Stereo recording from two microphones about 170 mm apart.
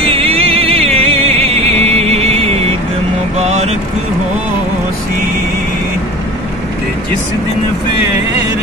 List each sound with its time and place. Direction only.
0.0 s music: 35° right (ahead or behind)
3.3 s vehicle: 40° right (ahead or behind)